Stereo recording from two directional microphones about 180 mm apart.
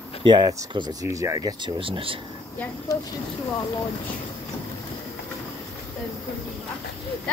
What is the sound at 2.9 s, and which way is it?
Speech, 20° left (ahead or behind).